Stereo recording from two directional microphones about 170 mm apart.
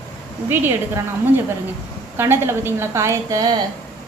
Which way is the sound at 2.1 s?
15° right (ahead or behind).